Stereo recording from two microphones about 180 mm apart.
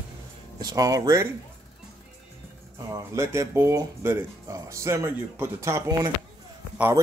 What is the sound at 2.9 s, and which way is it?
Speech, 15° right (ahead or behind).